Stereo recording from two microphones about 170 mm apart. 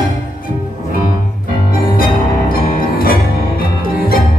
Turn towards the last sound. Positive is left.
turn(degrees=55)  # may be behind; listen again after turning